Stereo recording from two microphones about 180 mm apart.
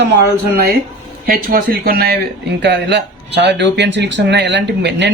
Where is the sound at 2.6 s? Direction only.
70° right (ahead or behind).